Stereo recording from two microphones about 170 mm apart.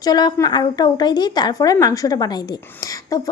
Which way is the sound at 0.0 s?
25° left (ahead or behind).